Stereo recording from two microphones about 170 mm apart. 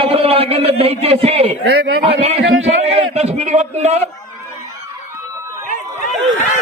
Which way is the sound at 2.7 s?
40° right (ahead or behind).